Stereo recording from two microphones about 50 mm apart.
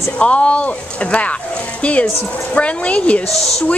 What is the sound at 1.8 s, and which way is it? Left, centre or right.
A woman's voice, left.